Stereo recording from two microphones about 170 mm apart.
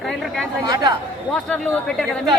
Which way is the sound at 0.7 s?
25° right (ahead or behind).